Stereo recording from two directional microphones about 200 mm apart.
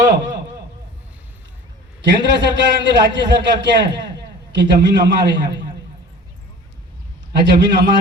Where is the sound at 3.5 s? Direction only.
60° right (ahead or behind).